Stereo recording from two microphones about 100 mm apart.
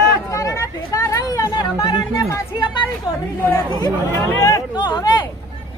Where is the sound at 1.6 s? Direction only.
45° left (ahead or behind).